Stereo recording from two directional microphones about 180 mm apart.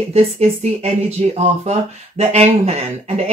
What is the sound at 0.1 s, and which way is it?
Speech, 35° right (ahead or behind).